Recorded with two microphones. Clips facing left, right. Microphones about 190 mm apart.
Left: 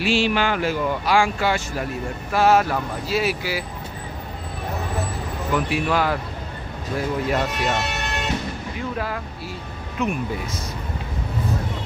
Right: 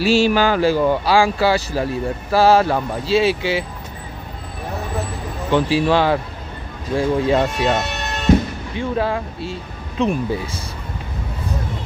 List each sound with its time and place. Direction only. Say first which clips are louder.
0.0 s speech: right 5 dB; 40° right (ahead or behind)
5.5 s speech: right 6 dB; 30° right (ahead or behind)
8.7 s speech: right 9 dB; 25° right (ahead or behind)